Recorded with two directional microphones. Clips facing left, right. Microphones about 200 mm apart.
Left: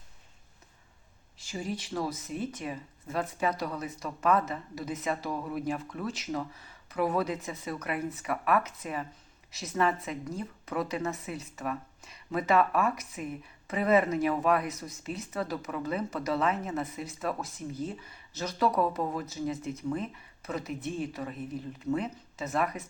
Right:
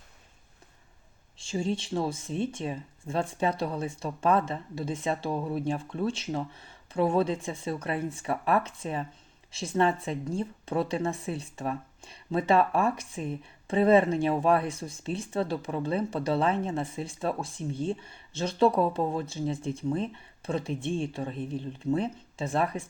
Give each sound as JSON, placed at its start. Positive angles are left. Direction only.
{"t": 1.4, "sound": "speech", "side_deg": -25}